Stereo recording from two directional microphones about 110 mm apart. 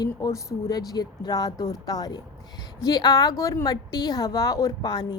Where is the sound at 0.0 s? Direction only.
35° left (ahead or behind).